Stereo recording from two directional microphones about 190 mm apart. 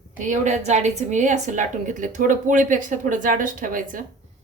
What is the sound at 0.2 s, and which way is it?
A woman's voice, 40° right (ahead or behind).